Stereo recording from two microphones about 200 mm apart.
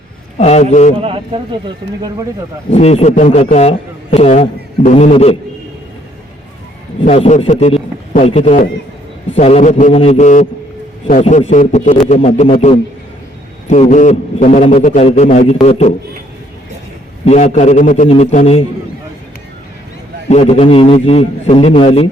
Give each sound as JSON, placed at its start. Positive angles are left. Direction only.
{"t": 0.3, "sound": "a man's voice", "side_deg": 35}
{"t": 0.9, "sound": "speech", "side_deg": -25}
{"t": 2.6, "sound": "a man's voice", "side_deg": 35}
{"t": 7.1, "sound": "a man's voice", "side_deg": 30}
{"t": 17.2, "sound": "a man's voice", "side_deg": 35}
{"t": 20.3, "sound": "a man's voice", "side_deg": 30}